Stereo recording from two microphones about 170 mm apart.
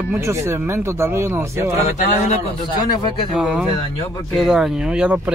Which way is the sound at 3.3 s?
Centre (ahead or behind).